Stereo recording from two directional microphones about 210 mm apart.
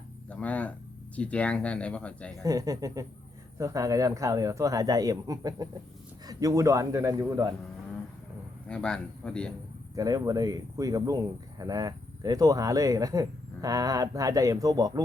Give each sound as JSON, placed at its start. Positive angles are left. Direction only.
{"t": 0.3, "sound": "speech", "side_deg": 5}
{"t": 2.3, "sound": "speech", "side_deg": -15}
{"t": 8.6, "sound": "speech", "side_deg": 5}
{"t": 9.9, "sound": "speech", "side_deg": -15}